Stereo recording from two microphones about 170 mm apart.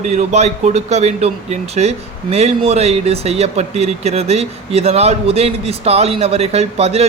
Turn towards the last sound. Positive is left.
turn(degrees=-35)  # may be behind; listen again after turning